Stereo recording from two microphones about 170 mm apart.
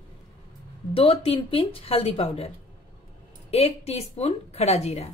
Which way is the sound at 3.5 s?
35° left (ahead or behind).